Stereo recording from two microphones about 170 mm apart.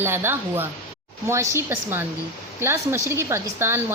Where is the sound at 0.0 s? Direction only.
15° right (ahead or behind).